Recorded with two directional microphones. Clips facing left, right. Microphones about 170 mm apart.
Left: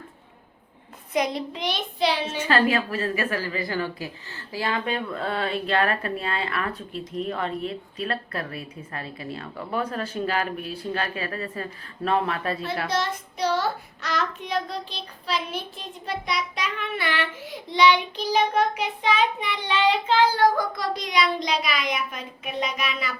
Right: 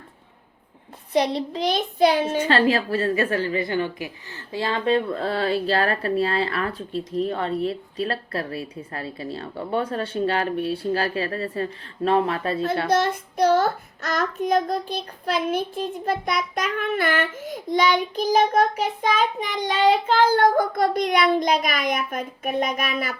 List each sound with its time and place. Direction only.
1.1 s child singing: 30° right (ahead or behind); by 2.5 s 50° right (ahead or behind)
2.5 s a woman's voice: 30° right (ahead or behind)
12.9 s child singing: 55° right (ahead or behind)